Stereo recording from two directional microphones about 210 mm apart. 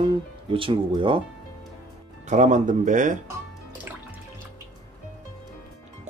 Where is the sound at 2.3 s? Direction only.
35° right (ahead or behind).